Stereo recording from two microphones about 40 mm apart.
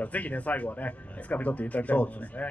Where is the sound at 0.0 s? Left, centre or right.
Left.